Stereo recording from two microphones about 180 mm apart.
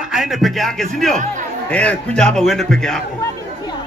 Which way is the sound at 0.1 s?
Centre (ahead or behind).